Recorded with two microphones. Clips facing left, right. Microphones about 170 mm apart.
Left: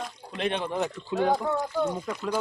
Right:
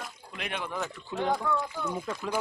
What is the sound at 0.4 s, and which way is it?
Speech, 30° left (ahead or behind).